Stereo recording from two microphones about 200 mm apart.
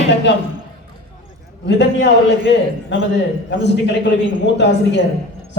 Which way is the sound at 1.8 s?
60° left (ahead or behind).